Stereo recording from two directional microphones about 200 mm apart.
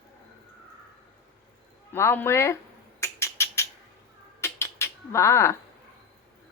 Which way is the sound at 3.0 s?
15° left (ahead or behind).